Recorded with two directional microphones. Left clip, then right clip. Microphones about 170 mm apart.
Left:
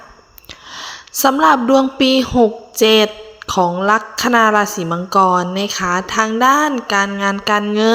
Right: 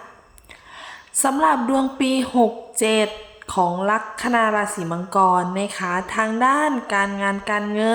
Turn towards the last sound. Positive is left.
turn(degrees=25)  # may be behind; listen again after turning